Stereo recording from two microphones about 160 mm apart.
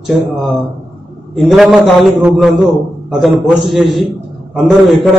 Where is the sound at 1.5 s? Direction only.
Centre (ahead or behind).